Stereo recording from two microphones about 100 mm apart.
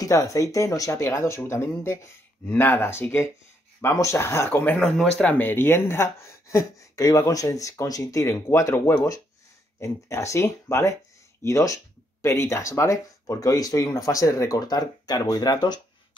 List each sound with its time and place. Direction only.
0.0 s speech: 35° left (ahead or behind)
4.7 s speech: 5° left (ahead or behind)
5.2 s speech: 20° left (ahead or behind); by 15.8 s 40° left (ahead or behind)